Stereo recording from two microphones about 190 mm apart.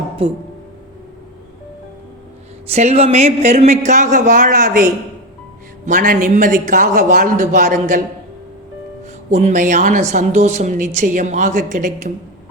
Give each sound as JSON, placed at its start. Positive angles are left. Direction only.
{"t": 2.6, "sound": "a woman's voice", "side_deg": -35}
{"t": 9.3, "sound": "a woman's voice", "side_deg": -40}